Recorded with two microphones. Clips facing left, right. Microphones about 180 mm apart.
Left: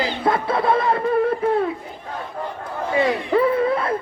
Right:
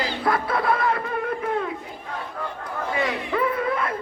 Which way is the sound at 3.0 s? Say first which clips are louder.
Left 7 dB; 30° left (ahead or behind).